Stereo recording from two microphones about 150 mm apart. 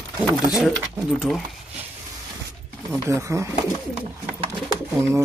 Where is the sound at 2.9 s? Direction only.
20° right (ahead or behind).